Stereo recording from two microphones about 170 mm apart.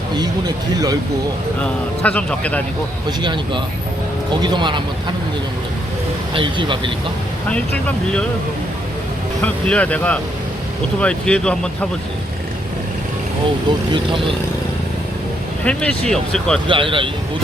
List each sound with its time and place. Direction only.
0.2 s speech: 25° right (ahead or behind)
1.6 s speech: 10° left (ahead or behind)
3.2 s speech: 25° right (ahead or behind)
6.3 s speech: 30° right (ahead or behind)
9.4 s speech: 5° left (ahead or behind)
15.6 s speech: 5° left (ahead or behind)
16.6 s speech: 30° right (ahead or behind)